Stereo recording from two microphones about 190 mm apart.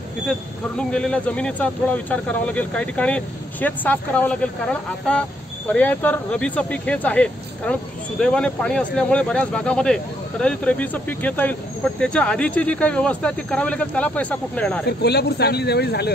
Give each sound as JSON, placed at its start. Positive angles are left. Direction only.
{"t": 0.3, "sound": "speech", "side_deg": 5}
{"t": 14.9, "sound": "speech", "side_deg": 60}